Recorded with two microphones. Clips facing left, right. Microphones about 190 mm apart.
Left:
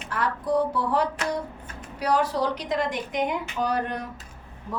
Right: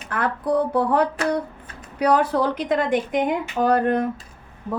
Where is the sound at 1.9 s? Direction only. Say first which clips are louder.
Right 5 dB; 55° right (ahead or behind).